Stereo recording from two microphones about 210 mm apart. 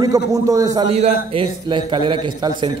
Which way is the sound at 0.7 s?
30° right (ahead or behind).